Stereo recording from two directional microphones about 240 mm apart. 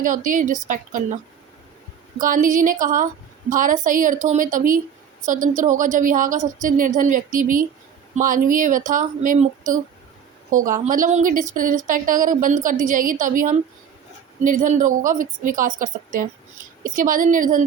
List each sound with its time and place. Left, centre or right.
0.0 s a woman's voice: right
2.1 s a woman's voice: right